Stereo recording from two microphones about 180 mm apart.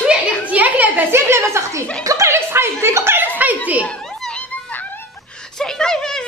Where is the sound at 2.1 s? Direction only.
15° right (ahead or behind).